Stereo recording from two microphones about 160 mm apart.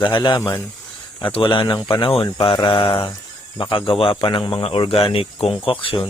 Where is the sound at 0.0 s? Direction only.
30° left (ahead or behind).